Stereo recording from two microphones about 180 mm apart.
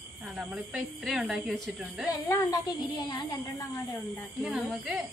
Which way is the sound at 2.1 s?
20° left (ahead or behind).